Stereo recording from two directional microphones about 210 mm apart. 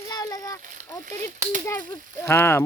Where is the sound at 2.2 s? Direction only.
10° left (ahead or behind).